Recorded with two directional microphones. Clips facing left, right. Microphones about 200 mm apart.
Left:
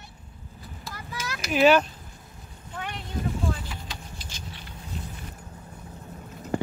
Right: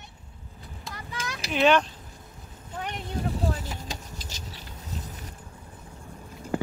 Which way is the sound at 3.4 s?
40° right (ahead or behind).